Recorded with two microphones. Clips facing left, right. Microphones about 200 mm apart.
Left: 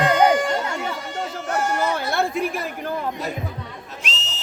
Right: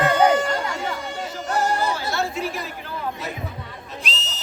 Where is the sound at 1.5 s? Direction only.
35° right (ahead or behind).